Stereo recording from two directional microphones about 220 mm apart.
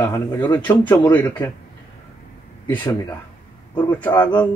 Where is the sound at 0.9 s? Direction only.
10° left (ahead or behind).